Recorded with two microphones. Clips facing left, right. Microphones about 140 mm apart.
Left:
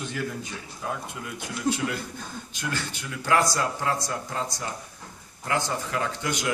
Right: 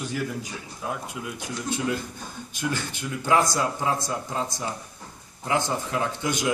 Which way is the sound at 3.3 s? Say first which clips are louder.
Right 1 dB; 20° right (ahead or behind).